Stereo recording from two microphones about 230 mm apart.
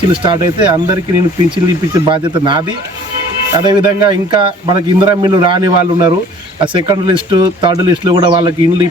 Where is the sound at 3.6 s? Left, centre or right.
Centre.